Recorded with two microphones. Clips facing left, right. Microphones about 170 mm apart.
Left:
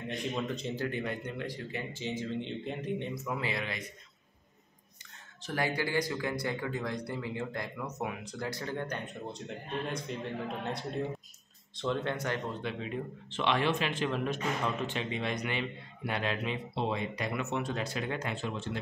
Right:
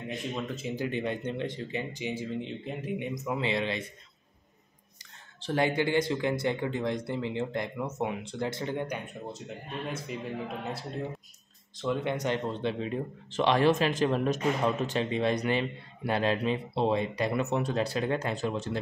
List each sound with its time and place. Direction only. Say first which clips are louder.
0.1 s speech: left 1 dB; 5° right (ahead or behind)
0.7 s speech: right 3 dB; 20° right (ahead or behind)
3.2 s speech: right 5 dB; 20° right (ahead or behind)
5.4 s speech: right 5 dB; 25° right (ahead or behind); by 12.0 s centre (ahead or behind)
12.0 s speech: right 4 dB; 15° right (ahead or behind)
12.9 s speech: right 5 dB; 40° right (ahead or behind)